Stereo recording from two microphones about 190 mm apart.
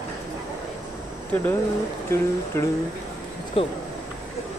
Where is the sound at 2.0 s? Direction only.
15° left (ahead or behind).